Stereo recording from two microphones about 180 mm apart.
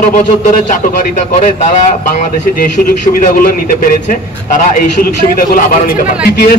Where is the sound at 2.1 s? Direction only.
45° left (ahead or behind).